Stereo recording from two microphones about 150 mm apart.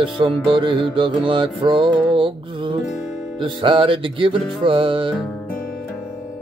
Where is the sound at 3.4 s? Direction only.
35° right (ahead or behind).